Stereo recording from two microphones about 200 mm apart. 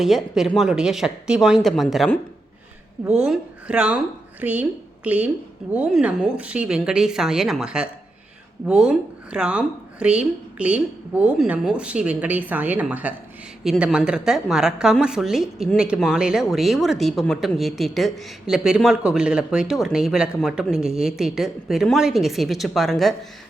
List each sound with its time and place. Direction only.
0.0 s a woman's voice: centre (ahead or behind)